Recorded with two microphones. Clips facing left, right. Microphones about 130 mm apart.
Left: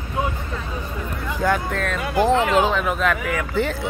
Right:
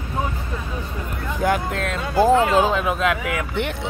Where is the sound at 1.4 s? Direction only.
20° right (ahead or behind).